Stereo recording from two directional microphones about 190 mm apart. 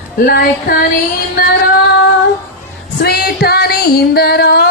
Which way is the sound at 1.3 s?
55° left (ahead or behind).